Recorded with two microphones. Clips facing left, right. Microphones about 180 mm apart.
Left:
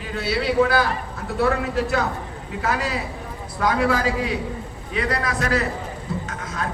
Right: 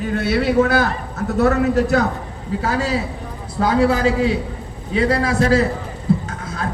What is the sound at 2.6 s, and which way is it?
A man's voice, 30° right (ahead or behind).